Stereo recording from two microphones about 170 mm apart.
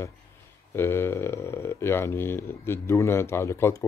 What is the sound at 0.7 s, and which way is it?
Speech, 15° left (ahead or behind).